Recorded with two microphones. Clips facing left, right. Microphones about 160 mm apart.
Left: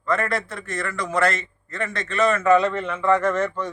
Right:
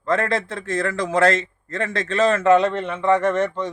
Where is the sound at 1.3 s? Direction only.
30° right (ahead or behind).